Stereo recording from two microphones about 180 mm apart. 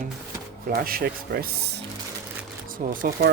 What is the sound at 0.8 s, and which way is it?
Speech, 55° right (ahead or behind).